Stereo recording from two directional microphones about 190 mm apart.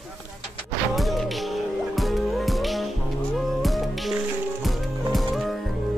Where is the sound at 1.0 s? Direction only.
Centre (ahead or behind).